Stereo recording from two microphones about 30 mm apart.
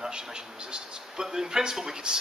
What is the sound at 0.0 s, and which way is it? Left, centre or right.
A man's voice, right.